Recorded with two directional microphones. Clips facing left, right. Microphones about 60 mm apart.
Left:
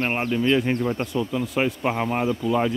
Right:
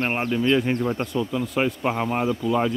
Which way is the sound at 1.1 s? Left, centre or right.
Centre.